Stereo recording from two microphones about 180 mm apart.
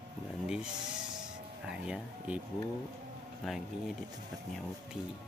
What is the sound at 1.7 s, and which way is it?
Speech, 5° right (ahead or behind).